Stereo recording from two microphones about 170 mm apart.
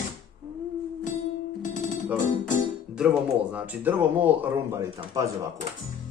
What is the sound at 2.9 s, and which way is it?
Speech, 5° right (ahead or behind).